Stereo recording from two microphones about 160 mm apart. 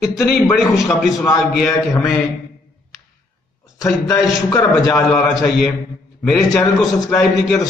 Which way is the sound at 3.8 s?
20° left (ahead or behind).